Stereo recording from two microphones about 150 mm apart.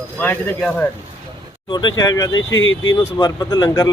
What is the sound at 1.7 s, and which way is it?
Speech, 30° left (ahead or behind).